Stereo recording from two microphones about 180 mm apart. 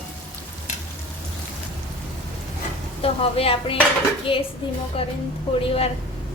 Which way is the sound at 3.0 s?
35° left (ahead or behind).